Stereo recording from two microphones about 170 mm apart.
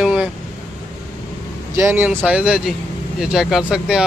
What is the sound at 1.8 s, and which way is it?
Speech, 15° right (ahead or behind).